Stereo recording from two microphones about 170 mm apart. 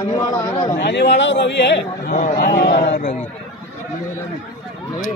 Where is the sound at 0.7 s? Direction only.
85° left.